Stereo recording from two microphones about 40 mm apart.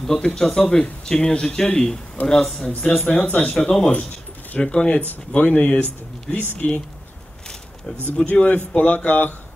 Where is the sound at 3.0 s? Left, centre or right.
Left.